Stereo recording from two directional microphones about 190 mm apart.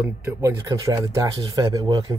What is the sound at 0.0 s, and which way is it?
Speech, 10° right (ahead or behind).